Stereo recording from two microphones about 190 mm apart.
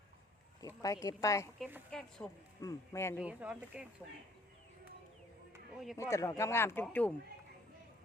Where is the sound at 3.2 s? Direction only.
5° right (ahead or behind).